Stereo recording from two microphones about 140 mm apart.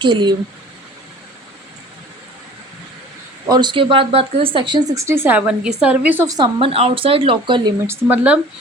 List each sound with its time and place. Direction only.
0.0 s speech: 35° right (ahead or behind)
3.4 s speech: 30° right (ahead or behind); by 6.2 s 10° right (ahead or behind)
6.2 s speech: 30° right (ahead or behind)
6.6 s speech: 45° right (ahead or behind)
7.9 s speech: 10° right (ahead or behind)